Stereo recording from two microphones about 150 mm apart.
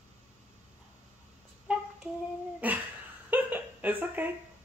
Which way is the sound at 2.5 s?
10° right (ahead or behind).